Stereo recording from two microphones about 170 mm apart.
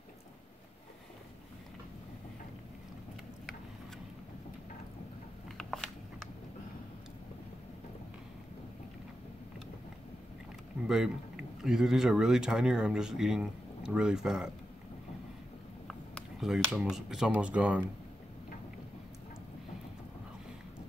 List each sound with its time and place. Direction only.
5.6 s a sound: centre (ahead or behind)
11.6 s speech: centre (ahead or behind)
15.9 s speech: centre (ahead or behind)